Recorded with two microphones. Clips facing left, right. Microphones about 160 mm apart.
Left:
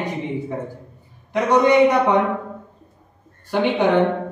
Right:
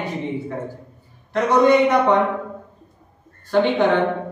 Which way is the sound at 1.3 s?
15° left (ahead or behind).